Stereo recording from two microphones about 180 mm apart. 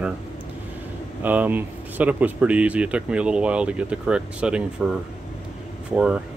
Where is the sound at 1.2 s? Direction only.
10° right (ahead or behind).